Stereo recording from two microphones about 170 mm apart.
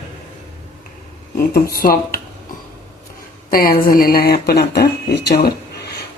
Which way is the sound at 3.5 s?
60° left (ahead or behind).